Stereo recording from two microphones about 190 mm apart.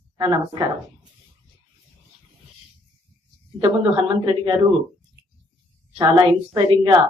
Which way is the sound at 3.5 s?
25° right (ahead or behind).